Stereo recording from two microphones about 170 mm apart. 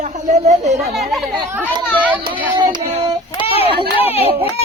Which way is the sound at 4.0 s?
35° left (ahead or behind).